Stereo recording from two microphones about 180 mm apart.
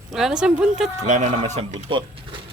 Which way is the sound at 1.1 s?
40° right (ahead or behind).